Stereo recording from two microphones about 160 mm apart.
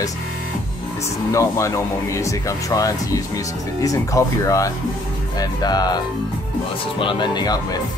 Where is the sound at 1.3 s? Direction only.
20° left (ahead or behind).